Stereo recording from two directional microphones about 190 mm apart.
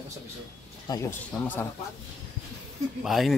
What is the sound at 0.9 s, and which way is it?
Speech, 15° left (ahead or behind).